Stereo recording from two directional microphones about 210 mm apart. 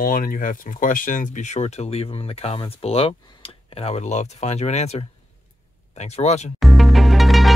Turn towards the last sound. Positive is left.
turn(degrees=0)  # may be behind; listen again after turning